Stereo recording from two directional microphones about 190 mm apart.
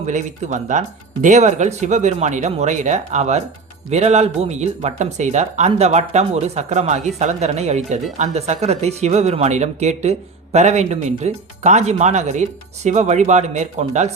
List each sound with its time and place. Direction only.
0.0 s speech: 40° right (ahead or behind)